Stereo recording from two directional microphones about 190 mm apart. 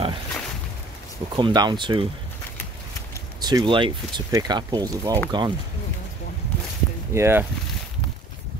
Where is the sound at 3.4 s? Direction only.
20° right (ahead or behind).